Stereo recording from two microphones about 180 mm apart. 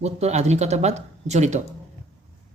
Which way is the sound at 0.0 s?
35° right (ahead or behind).